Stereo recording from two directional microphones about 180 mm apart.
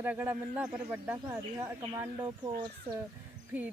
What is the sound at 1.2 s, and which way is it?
Speech, 20° right (ahead or behind).